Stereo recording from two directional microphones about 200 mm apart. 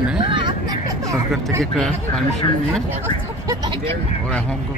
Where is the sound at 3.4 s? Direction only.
20° right (ahead or behind).